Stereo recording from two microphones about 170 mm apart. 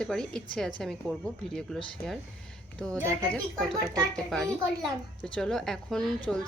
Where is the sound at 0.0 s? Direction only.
5° left (ahead or behind).